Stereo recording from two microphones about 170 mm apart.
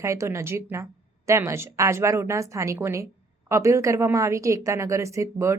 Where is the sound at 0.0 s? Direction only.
15° right (ahead or behind).